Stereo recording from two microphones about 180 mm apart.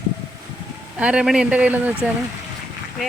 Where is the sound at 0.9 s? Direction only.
5° right (ahead or behind).